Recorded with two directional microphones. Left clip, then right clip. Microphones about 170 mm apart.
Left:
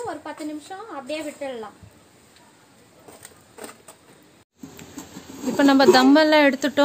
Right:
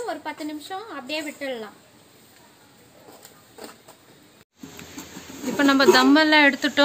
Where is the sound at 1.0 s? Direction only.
50° right (ahead or behind).